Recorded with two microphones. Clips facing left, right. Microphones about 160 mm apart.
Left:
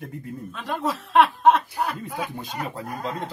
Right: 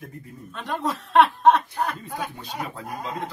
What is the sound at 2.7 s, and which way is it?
Speech, 35° left (ahead or behind).